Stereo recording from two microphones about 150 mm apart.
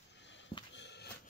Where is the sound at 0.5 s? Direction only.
35° left (ahead or behind).